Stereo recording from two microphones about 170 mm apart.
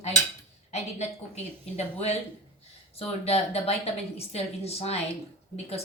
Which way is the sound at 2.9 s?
35° left (ahead or behind).